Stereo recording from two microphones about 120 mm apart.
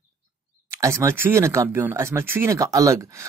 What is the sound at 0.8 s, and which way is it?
Speech, 25° right (ahead or behind).